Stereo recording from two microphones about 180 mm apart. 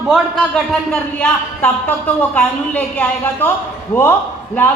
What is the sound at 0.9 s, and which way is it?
A man's voice, 10° left (ahead or behind).